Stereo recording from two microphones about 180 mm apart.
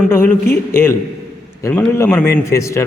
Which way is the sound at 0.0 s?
10° left (ahead or behind).